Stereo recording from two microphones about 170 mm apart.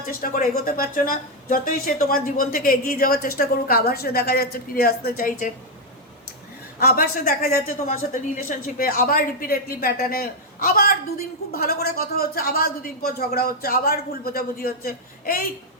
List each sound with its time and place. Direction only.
0.1 s a woman's voice: 55° left (ahead or behind)
6.7 s a woman's voice: 60° left (ahead or behind)